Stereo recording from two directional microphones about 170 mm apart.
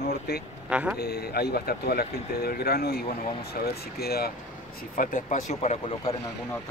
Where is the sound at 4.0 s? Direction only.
65° left (ahead or behind).